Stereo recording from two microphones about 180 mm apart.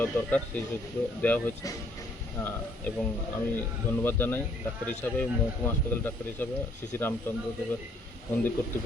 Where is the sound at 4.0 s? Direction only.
10° left (ahead or behind).